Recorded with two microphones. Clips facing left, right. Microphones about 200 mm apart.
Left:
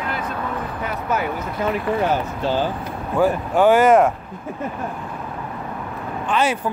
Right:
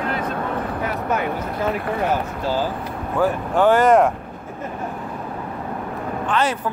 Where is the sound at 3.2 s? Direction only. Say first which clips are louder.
Left 1 dB; 10° left (ahead or behind).